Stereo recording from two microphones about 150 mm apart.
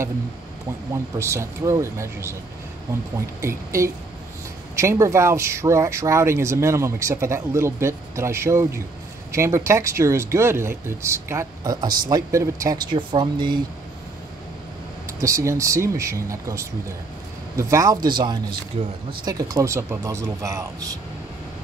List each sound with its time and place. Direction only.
1.1 s speech: 20° right (ahead or behind)
3.3 s speech: 20° right (ahead or behind)
12.7 s speech: 35° right (ahead or behind)
15.1 s speech: 20° right (ahead or behind); by 18.9 s 40° right (ahead or behind)
19.2 s speech: 25° right (ahead or behind)